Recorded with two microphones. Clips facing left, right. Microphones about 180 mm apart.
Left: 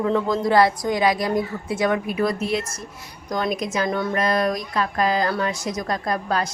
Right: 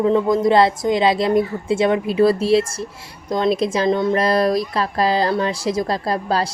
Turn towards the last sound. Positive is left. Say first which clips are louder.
# right 3 dB
turn(degrees=-30)  # may be behind; listen again after turning